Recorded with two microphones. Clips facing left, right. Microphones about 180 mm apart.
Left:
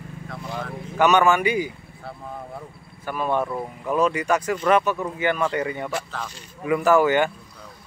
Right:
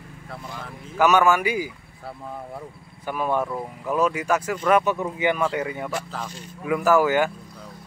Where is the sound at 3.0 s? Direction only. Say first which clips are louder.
Even; 15° right (ahead or behind).